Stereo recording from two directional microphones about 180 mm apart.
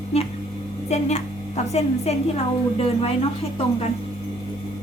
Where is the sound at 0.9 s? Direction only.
40° left (ahead or behind).